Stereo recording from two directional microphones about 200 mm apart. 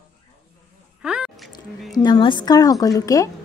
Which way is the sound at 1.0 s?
5° right (ahead or behind).